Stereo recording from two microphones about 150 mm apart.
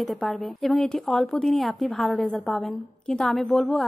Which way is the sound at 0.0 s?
Centre (ahead or behind).